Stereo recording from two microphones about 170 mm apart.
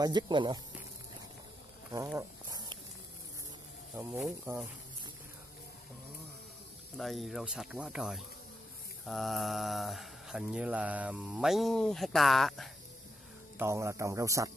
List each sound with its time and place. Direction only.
0.0 s speech: 25° right (ahead or behind)
1.9 s snake: 20° right (ahead or behind)
3.9 s speech: 15° right (ahead or behind)
7.0 s speech: centre (ahead or behind)
13.6 s speech: 15° right (ahead or behind)